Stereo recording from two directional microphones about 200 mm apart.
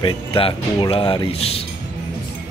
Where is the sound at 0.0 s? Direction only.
25° left (ahead or behind).